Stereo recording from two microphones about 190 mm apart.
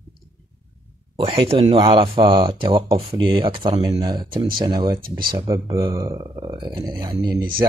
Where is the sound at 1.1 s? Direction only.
30° right (ahead or behind).